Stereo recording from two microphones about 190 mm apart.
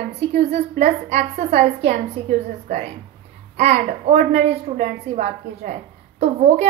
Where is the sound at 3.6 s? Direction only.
35° right (ahead or behind).